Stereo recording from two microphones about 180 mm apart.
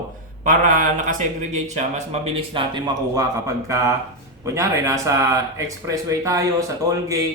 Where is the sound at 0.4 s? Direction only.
45° right (ahead or behind); by 6.7 s 20° right (ahead or behind).